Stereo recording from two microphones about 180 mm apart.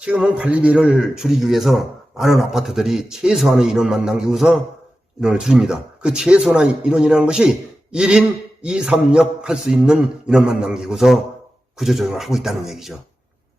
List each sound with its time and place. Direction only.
0.0 s a man's voice: 5° right (ahead or behind)